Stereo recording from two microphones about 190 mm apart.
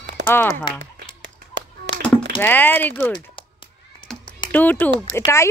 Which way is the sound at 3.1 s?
25° left (ahead or behind).